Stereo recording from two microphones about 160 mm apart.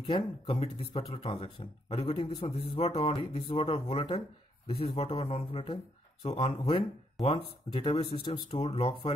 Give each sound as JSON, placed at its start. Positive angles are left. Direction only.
{"t": 0.0, "sound": "speech", "side_deg": 30}